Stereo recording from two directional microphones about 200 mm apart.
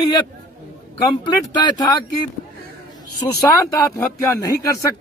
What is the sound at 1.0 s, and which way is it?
Speech, 20° left (ahead or behind).